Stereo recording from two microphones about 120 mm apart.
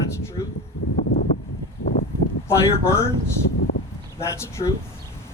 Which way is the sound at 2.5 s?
25° left (ahead or behind).